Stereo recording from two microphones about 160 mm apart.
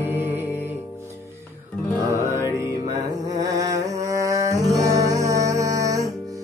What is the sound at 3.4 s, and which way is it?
Music, 20° right (ahead or behind).